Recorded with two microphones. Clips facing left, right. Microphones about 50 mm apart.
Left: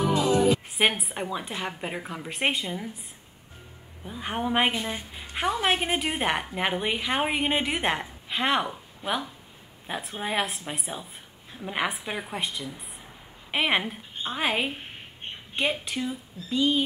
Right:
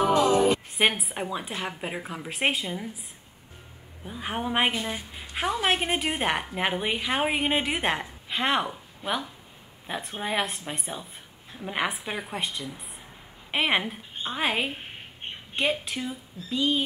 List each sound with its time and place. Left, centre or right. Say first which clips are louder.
0.2 s music: right 2 dB; right
0.5 s a woman's voice: even; centre
4.0 s a woman's voice: left 1 dB; centre